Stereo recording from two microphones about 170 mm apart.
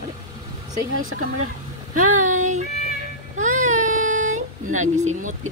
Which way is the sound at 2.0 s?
50° right (ahead or behind).